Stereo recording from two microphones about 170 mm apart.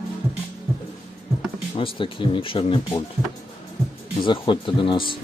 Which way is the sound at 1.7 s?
30° left (ahead or behind).